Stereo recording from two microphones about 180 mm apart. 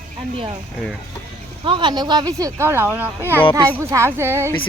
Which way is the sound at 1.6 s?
25° right (ahead or behind).